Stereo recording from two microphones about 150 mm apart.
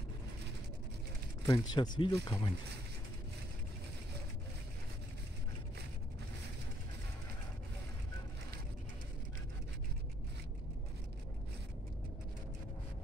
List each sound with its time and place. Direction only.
1.4 s speech: 25° left (ahead or behind)